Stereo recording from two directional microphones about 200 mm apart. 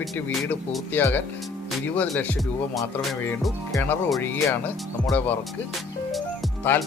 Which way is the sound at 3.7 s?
10° left (ahead or behind).